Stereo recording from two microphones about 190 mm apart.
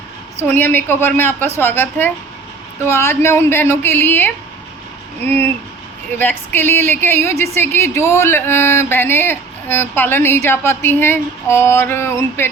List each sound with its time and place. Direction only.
0.3 s speech: 10° left (ahead or behind)